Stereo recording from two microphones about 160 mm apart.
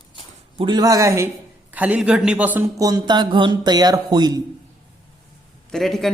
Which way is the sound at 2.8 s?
25° right (ahead or behind).